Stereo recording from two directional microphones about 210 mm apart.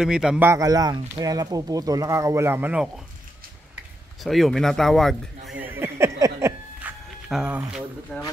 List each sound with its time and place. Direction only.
0.0 s speech: 5° right (ahead or behind)
4.2 s speech: centre (ahead or behind)
5.5 s music: 10° right (ahead or behind)
7.2 s speech: 5° right (ahead or behind)